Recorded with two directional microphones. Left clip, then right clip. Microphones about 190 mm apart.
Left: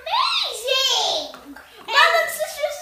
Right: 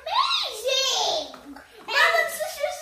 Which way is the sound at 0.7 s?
20° right (ahead or behind).